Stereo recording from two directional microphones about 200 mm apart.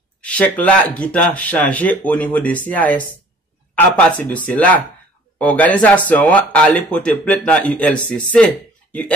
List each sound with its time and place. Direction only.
0.2 s speech: 5° left (ahead or behind)